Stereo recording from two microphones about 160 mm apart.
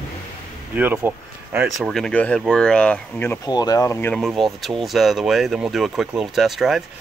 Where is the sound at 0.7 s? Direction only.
10° right (ahead or behind).